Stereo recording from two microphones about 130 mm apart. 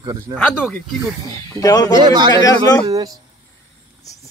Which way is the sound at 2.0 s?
35° right (ahead or behind).